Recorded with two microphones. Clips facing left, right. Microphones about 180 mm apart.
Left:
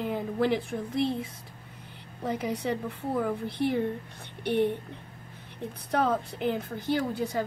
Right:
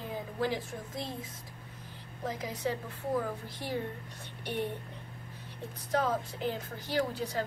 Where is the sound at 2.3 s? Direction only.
60° left (ahead or behind).